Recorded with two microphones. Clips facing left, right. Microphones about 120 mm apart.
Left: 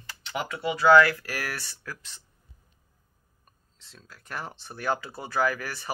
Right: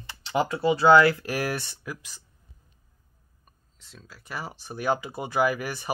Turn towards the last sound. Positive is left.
turn(degrees=-15)  # may be behind; listen again after turning